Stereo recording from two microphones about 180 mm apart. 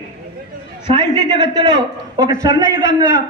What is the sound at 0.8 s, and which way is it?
A man's voice, 25° right (ahead or behind).